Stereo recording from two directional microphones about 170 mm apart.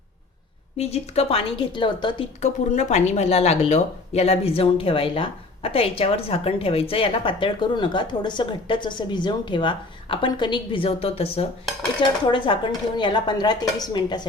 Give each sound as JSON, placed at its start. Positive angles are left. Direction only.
{"t": 0.8, "sound": "speech", "side_deg": 35}
{"t": 2.4, "sound": "speech", "side_deg": 45}